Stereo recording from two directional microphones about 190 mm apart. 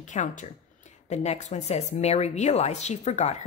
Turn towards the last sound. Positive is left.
turn(degrees=35)  # may be behind; listen again after turning